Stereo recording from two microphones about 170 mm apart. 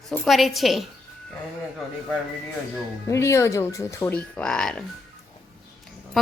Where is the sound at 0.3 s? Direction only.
Centre (ahead or behind).